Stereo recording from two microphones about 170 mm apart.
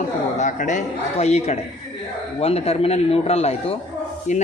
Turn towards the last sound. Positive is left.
turn(degrees=45)  # may be behind; listen again after turning